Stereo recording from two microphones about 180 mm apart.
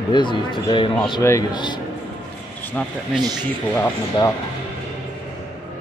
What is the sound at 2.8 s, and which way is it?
Speech, 10° left (ahead or behind).